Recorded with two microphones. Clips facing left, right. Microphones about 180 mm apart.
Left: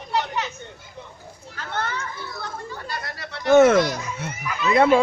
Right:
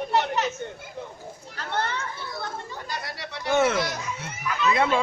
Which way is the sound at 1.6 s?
30° right (ahead or behind).